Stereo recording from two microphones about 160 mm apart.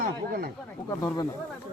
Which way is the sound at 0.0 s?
65° right (ahead or behind).